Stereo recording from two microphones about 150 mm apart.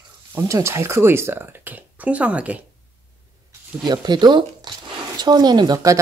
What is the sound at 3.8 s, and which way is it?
Speech, 30° right (ahead or behind).